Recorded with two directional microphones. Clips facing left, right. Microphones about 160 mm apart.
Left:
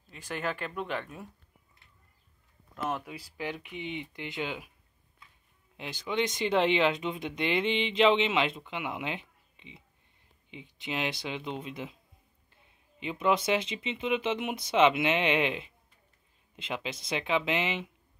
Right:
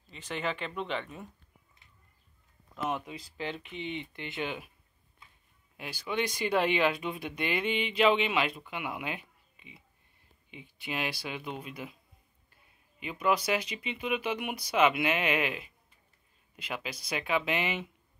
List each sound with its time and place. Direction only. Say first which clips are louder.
0.1 s speech: even; 5° left (ahead or behind)
2.7 s speech: even; 5° left (ahead or behind)
5.8 s speech: left 2 dB; 20° left (ahead or behind)
13.0 s speech: left 2 dB; 25° left (ahead or behind)